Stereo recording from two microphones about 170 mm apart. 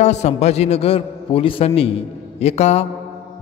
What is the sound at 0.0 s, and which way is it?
A man's voice, 40° left (ahead or behind).